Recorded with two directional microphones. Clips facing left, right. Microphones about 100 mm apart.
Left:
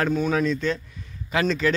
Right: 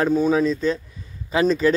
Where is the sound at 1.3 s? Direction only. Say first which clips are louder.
Right 4 dB; 30° right (ahead or behind).